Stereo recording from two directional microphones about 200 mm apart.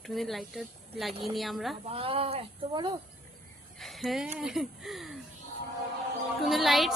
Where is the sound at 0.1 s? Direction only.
Centre (ahead or behind).